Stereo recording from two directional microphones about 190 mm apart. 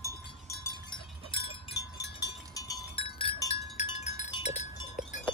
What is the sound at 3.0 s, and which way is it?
Wind chime, 30° left (ahead or behind).